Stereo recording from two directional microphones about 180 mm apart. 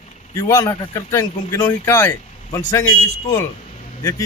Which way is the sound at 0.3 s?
15° left (ahead or behind).